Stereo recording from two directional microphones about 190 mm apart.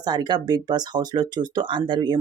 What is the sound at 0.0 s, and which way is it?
Speech, 20° right (ahead or behind).